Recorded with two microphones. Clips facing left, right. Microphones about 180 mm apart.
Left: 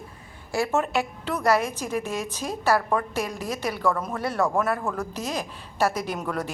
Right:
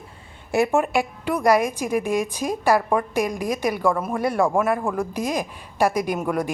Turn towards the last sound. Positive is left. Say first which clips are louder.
# right 6 dB
turn(degrees=-15)  # may be behind; listen again after turning